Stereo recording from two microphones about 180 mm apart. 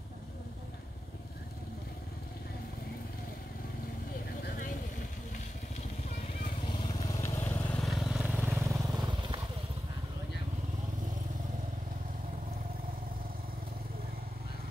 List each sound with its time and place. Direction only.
6.6 s vehicle: 25° left (ahead or behind)
7.2 s vehicle: 15° left (ahead or behind)
8.4 s vehicle: 15° right (ahead or behind)